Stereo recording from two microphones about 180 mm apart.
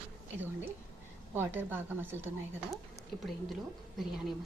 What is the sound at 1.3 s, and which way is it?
Speech, 10° right (ahead or behind).